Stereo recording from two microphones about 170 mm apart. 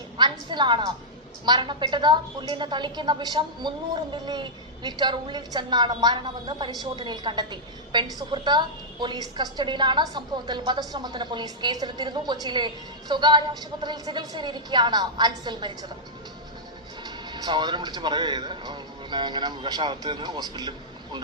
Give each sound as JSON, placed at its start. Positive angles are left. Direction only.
{"t": 0.2, "sound": "a sound", "side_deg": -25}
{"t": 1.5, "sound": "a woman's voice", "side_deg": -25}
{"t": 17.0, "sound": "speech", "side_deg": -25}